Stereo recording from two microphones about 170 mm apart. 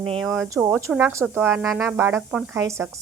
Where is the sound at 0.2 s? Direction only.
Centre (ahead or behind).